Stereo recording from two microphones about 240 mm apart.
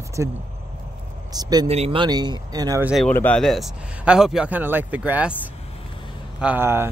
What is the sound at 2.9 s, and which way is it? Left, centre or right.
A man's voice, centre.